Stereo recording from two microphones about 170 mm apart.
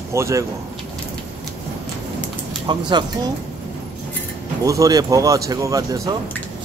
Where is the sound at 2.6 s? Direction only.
25° right (ahead or behind).